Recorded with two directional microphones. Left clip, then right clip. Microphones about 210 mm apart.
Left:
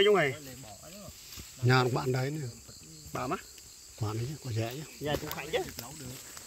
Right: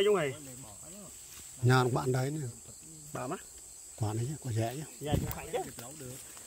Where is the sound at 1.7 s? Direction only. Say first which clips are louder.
Left 1 dB; 20° right (ahead or behind).